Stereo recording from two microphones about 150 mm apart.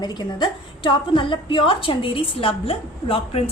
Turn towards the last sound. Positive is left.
turn(degrees=40)  # may be behind; listen again after turning